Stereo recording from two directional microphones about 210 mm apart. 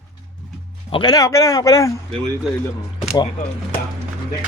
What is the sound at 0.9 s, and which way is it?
Speech, 20° left (ahead or behind).